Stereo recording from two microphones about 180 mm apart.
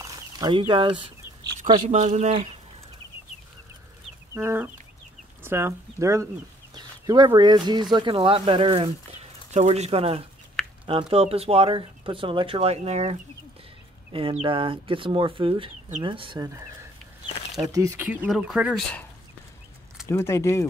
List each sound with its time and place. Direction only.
0.0 s a sound: 25° right (ahead or behind)
1.9 s speech: 40° right (ahead or behind)
4.3 s chicken: 15° right (ahead or behind)
5.4 s speech: 15° right (ahead or behind)
17.7 s speech: 15° right (ahead or behind)
20.1 s speech: 15° left (ahead or behind)